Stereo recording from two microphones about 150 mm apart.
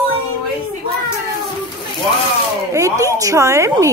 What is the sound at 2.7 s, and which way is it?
A woman's voice, 20° right (ahead or behind).